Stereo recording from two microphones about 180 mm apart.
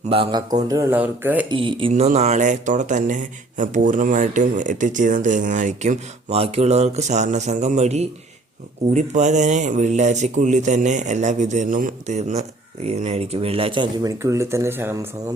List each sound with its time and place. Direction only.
0.1 s speech: 30° right (ahead or behind); by 1.5 s 10° right (ahead or behind)
1.5 s speech: 30° right (ahead or behind); by 15.0 s 10° right (ahead or behind)